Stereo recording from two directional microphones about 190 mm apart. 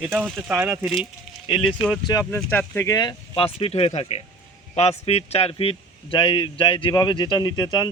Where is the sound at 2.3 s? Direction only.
10° left (ahead or behind).